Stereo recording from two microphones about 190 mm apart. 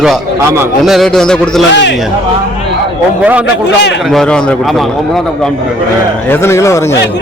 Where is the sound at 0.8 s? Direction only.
Centre (ahead or behind).